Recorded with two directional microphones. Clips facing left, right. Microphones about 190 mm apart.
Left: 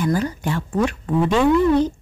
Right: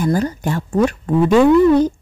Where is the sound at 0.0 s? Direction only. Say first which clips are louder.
Right 3 dB; 40° right (ahead or behind).